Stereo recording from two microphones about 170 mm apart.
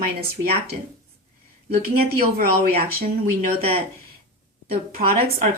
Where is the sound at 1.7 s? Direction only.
60° right (ahead or behind).